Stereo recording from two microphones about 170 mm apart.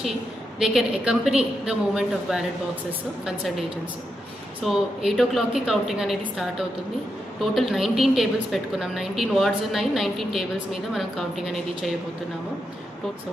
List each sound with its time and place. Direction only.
0.6 s a woman's voice: centre (ahead or behind)
4.6 s a woman's voice: centre (ahead or behind)